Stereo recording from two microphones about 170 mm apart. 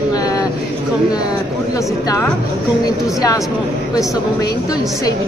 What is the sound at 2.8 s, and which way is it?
Speech, 20° left (ahead or behind).